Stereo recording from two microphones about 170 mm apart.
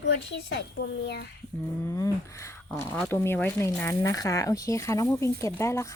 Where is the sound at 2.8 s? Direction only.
10° left (ahead or behind).